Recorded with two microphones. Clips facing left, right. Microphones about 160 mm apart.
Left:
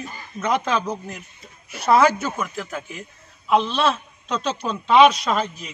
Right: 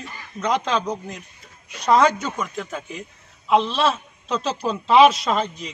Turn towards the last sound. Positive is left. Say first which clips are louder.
# even
turn(degrees=5)  # may be behind; listen again after turning